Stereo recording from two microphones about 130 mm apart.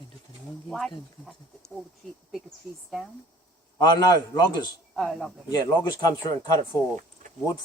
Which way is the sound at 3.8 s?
30° left (ahead or behind).